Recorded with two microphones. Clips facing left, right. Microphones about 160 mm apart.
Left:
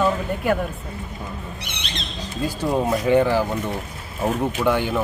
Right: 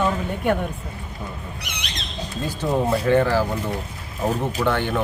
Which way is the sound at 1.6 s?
30° left (ahead or behind).